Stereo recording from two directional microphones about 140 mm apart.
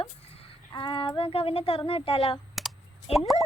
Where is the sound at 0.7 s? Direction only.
35° left (ahead or behind).